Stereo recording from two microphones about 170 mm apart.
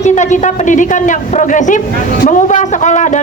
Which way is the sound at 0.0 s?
45° left (ahead or behind).